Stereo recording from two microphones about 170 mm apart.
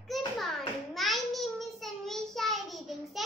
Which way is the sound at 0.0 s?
Centre (ahead or behind).